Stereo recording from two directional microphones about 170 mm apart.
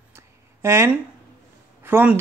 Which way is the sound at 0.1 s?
15° right (ahead or behind).